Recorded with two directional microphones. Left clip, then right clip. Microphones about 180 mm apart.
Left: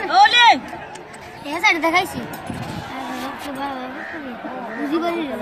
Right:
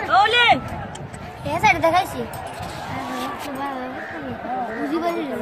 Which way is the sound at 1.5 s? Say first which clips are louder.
Even; 40° right (ahead or behind).